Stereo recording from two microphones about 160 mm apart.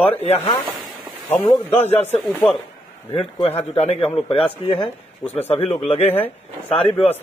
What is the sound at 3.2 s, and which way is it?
A man's voice, 40° left (ahead or behind).